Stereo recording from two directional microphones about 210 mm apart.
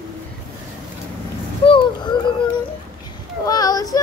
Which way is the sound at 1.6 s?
25° left (ahead or behind).